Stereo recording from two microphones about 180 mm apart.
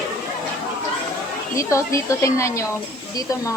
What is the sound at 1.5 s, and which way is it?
A woman's voice, 15° left (ahead or behind).